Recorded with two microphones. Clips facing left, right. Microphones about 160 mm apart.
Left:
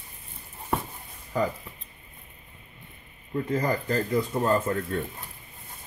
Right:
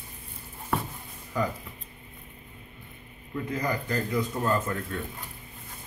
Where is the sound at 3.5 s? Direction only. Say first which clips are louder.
Left 3 dB; 40° left (ahead or behind).